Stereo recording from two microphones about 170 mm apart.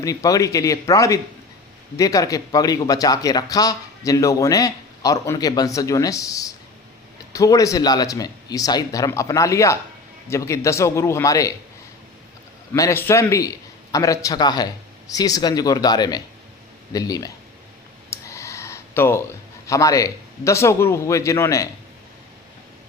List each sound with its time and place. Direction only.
0.0 s a man's voice: 20° left (ahead or behind)
12.7 s speech: 15° left (ahead or behind)
18.1 s a sound: 15° left (ahead or behind)
19.6 s a man's voice: 20° left (ahead or behind)